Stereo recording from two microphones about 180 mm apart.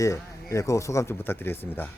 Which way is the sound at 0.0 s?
15° left (ahead or behind).